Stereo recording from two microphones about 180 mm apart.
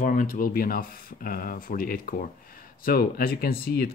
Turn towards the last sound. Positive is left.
turn(degrees=55)  # may be behind; listen again after turning